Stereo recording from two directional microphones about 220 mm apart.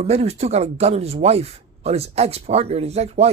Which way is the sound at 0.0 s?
30° right (ahead or behind).